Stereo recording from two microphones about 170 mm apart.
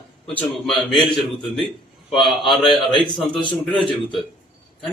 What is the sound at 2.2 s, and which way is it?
Speech, centre (ahead or behind).